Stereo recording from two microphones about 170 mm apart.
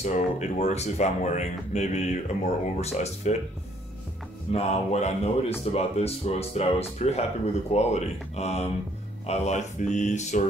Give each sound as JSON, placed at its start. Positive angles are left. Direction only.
{"t": 0.0, "sound": "speech", "side_deg": 45}
{"t": 4.5, "sound": "speech", "side_deg": 40}